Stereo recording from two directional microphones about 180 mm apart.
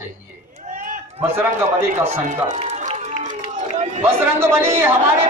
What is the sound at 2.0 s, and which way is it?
Run, 40° right (ahead or behind).